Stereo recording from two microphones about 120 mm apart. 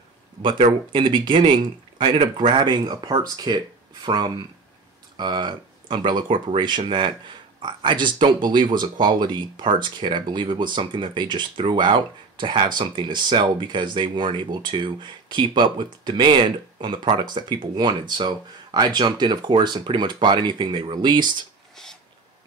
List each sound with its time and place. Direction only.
0.4 s speech: 40° right (ahead or behind)